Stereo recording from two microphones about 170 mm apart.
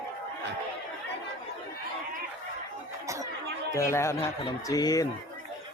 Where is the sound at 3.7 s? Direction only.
15° left (ahead or behind).